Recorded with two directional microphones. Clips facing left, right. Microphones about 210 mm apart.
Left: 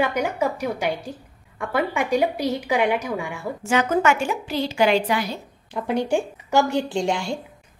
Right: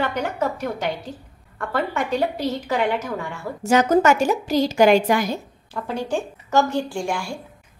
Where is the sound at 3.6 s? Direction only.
40° right (ahead or behind).